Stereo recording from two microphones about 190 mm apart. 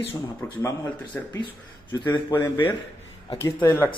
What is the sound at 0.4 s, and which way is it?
Speech, 15° left (ahead or behind).